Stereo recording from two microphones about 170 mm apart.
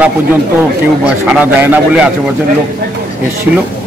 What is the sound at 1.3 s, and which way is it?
Speech, 10° right (ahead or behind).